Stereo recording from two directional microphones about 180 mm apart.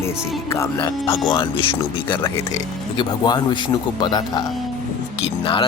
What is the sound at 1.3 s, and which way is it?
Speech, 30° left (ahead or behind).